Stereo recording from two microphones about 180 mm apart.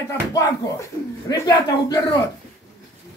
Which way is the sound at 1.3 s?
20° left (ahead or behind).